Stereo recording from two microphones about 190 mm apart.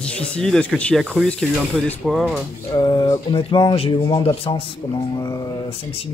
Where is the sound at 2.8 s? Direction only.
20° left (ahead or behind).